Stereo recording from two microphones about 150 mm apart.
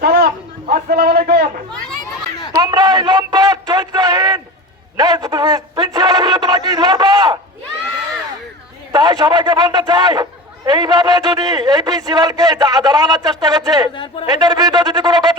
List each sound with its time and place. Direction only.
0.0 s a sound: 90° right
0.7 s a man's voice: 90° right
2.6 s a sound: 25° right (ahead or behind)
4.9 s a man's voice: 25° right (ahead or behind)
8.9 s a man's voice: 25° right (ahead or behind)
13.9 s speech: 35° left (ahead or behind)
14.3 s a man's voice: 30° right (ahead or behind)